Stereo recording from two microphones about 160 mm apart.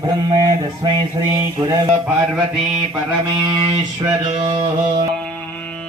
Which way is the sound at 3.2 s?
20° right (ahead or behind).